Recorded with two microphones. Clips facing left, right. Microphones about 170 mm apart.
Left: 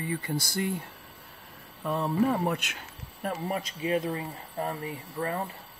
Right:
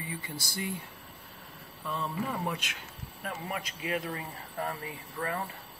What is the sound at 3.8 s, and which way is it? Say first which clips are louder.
Speech: left 6 dB; 30° left (ahead or behind).